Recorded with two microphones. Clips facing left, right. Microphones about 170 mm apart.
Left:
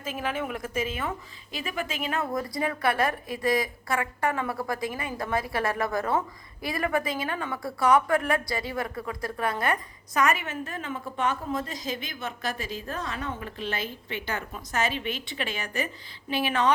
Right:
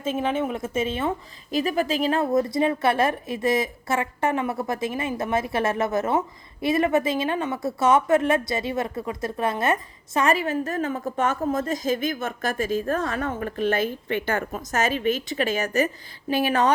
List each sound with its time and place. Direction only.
0.0 s a woman's voice: 25° right (ahead or behind)
1.5 s a woman's voice: 40° right (ahead or behind)